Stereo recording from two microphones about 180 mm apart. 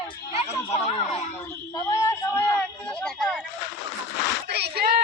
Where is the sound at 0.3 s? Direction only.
35° left (ahead or behind).